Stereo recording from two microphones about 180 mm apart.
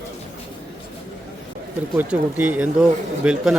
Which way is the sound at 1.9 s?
10° right (ahead or behind).